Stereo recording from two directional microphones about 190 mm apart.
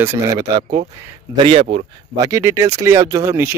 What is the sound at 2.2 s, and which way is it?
Speech, 15° right (ahead or behind).